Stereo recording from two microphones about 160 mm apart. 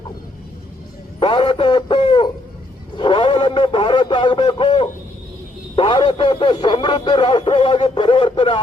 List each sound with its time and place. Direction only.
1.2 s a man's voice: 30° left (ahead or behind)